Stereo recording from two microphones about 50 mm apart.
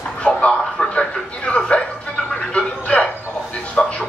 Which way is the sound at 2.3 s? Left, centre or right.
Left.